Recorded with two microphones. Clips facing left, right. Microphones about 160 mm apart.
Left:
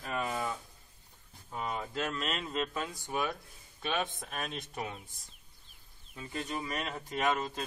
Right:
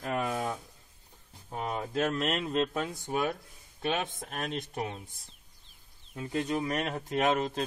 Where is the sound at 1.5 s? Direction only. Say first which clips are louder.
Right 3 dB; 55° right (ahead or behind).